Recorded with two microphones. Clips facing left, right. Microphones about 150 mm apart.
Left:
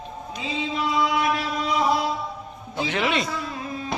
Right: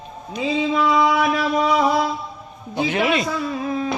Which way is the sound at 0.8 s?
90° right.